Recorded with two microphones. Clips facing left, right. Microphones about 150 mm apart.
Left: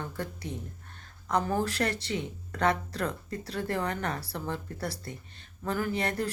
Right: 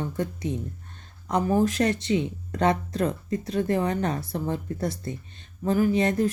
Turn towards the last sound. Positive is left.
turn(degrees=-20)  # may be behind; listen again after turning